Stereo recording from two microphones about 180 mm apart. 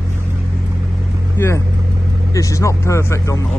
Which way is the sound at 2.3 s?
15° left (ahead or behind).